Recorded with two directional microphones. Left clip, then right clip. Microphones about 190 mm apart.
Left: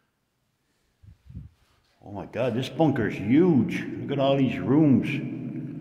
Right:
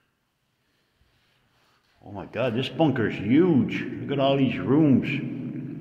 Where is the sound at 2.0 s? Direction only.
20° left (ahead or behind).